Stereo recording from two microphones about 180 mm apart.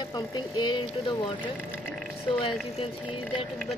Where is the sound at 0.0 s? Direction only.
20° left (ahead or behind).